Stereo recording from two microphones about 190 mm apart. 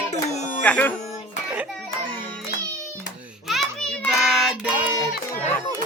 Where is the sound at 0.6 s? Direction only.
5° left (ahead or behind).